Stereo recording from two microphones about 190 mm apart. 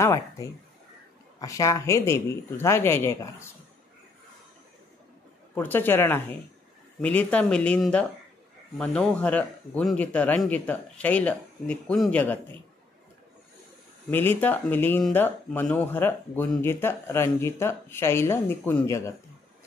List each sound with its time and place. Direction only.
0.0 s speech: 15° left (ahead or behind)
5.5 s speech: 10° left (ahead or behind)
14.1 s speech: 10° left (ahead or behind)